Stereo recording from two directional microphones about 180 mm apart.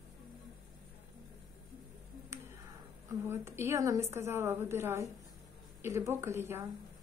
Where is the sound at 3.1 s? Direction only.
15° right (ahead or behind).